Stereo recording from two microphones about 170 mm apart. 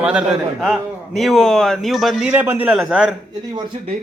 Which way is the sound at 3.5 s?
30° right (ahead or behind).